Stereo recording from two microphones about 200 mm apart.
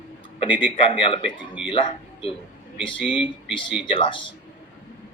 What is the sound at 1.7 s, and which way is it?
Speech, 25° left (ahead or behind).